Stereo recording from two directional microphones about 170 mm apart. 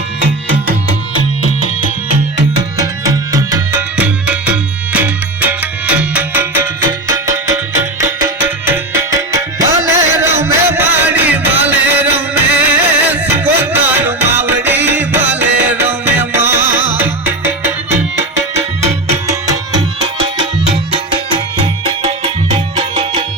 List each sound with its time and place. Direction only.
3.1 s music: 20° right (ahead or behind)
3.9 s music: 5° right (ahead or behind)
8.2 s music: 15° right (ahead or behind)
13.8 s music: 10° right (ahead or behind)
22.8 s music: 35° right (ahead or behind)